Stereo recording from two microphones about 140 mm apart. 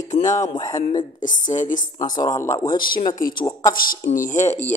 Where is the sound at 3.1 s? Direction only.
90° left.